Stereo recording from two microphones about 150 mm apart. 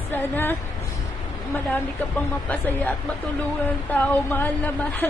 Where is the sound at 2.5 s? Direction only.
10° left (ahead or behind).